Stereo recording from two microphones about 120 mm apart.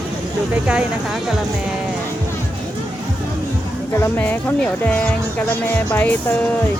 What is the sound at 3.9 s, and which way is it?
Speech, 20° left (ahead or behind).